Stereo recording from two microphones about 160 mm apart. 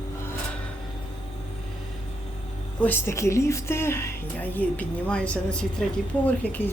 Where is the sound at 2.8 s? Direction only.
15° left (ahead or behind).